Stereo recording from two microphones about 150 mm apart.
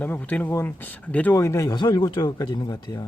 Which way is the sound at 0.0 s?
10° left (ahead or behind).